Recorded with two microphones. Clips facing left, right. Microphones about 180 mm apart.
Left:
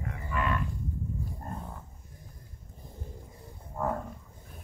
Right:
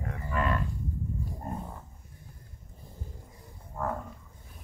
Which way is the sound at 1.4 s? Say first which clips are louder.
Right 3 dB; 10° right (ahead or behind).